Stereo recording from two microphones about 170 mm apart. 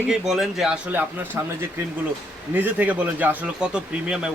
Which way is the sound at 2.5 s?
10° right (ahead or behind).